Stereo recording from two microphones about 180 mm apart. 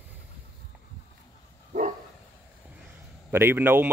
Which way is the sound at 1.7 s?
40° right (ahead or behind).